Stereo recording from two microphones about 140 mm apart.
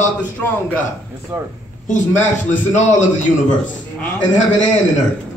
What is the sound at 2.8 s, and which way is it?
Speech, 55° left (ahead or behind).